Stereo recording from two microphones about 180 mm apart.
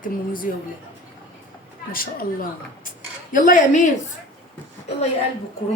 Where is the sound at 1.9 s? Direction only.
50° left (ahead or behind).